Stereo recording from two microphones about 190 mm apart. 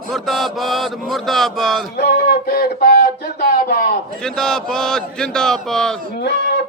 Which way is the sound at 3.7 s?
55° left (ahead or behind).